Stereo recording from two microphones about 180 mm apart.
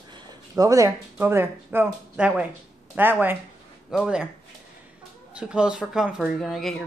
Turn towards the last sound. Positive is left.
turn(degrees=0)  # may be behind; listen again after turning